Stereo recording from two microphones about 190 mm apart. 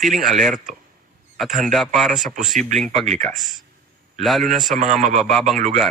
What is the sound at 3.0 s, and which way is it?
Speech, 40° right (ahead or behind).